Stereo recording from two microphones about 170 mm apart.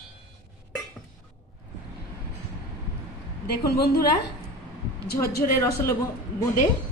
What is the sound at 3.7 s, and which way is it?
Speech, 65° left (ahead or behind).